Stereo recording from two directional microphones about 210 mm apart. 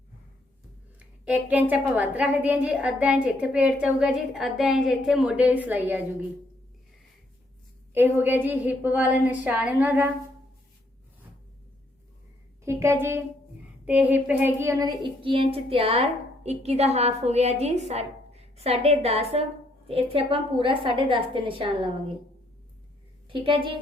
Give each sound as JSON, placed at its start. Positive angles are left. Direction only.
{"t": 0.9, "sound": "a woman's voice", "side_deg": -5}
{"t": 7.9, "sound": "a woman's voice", "side_deg": -10}
{"t": 12.6, "sound": "a woman's voice", "side_deg": -10}
{"t": 23.3, "sound": "a woman's voice", "side_deg": -25}